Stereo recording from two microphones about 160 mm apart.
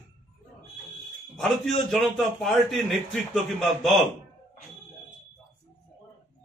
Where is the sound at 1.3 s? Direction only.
Centre (ahead or behind).